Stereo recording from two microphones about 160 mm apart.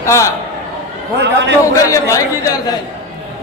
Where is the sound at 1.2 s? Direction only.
90° right.